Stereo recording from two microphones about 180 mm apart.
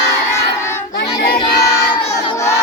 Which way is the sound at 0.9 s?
60° left (ahead or behind).